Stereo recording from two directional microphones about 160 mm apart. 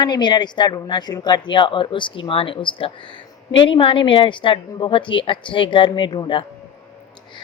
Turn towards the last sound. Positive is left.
turn(degrees=30)  # may be behind; listen again after turning